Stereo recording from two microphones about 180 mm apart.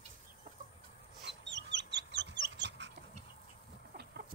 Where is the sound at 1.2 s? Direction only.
80° right.